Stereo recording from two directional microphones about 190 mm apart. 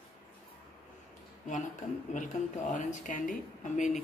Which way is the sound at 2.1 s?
40° left (ahead or behind).